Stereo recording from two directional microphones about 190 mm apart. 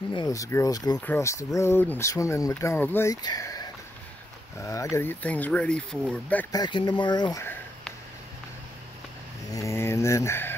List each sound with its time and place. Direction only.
0.1 s speech: 20° left (ahead or behind)
6.5 s speech: 25° left (ahead or behind)
9.5 s speech: 15° left (ahead or behind)